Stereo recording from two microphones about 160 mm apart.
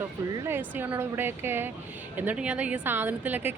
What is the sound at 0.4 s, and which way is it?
A woman's voice, 15° right (ahead or behind).